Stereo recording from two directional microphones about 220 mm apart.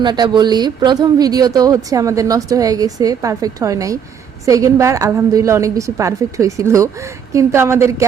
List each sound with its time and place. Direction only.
0.0 s speech: 20° right (ahead or behind)